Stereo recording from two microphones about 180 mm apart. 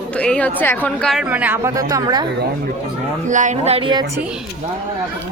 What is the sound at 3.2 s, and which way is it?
Speech, 45° right (ahead or behind).